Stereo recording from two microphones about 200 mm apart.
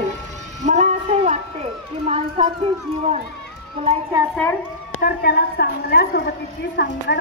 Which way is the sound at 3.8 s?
30° right (ahead or behind).